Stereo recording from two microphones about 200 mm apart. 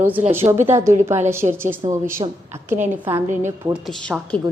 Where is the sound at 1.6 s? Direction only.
15° right (ahead or behind).